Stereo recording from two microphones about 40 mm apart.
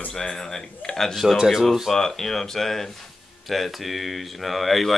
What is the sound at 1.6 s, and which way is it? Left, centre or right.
Speech, centre.